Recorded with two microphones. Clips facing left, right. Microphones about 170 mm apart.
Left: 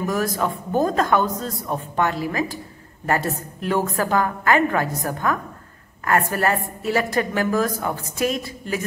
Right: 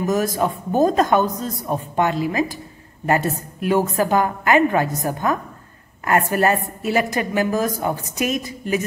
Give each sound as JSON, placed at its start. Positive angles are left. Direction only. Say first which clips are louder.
{"t": 0.0, "sound": "a man's voice", "louder": "right 3 dB", "side_deg": -20}